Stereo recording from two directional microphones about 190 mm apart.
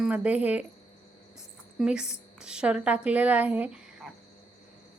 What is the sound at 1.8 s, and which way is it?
A woman's voice, 5° right (ahead or behind).